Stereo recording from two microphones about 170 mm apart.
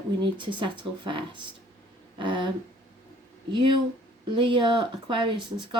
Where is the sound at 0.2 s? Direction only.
30° right (ahead or behind).